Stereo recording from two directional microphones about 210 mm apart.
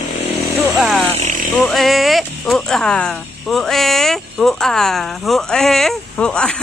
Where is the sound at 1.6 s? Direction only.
Centre (ahead or behind).